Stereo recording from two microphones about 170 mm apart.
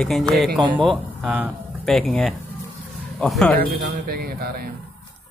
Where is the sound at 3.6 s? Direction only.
65° right (ahead or behind).